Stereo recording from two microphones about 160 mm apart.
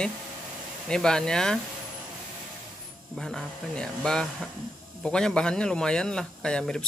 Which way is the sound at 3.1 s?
5° left (ahead or behind).